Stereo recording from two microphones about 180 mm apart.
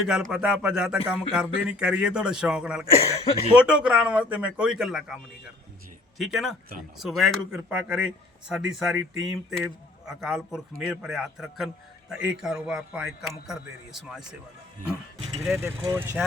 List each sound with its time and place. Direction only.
0.1 s a man's voice: 5° right (ahead or behind)
2.9 s speech: 35° left (ahead or behind)
3.5 s a man's voice: 5° right (ahead or behind)
15.5 s speech: 15° right (ahead or behind)